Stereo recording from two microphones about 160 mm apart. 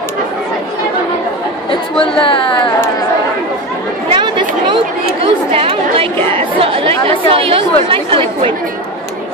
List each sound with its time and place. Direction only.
1.7 s a sound: 30° left (ahead or behind)
4.1 s chatter: 30° right (ahead or behind)
6.3 s speech: 35° right (ahead or behind)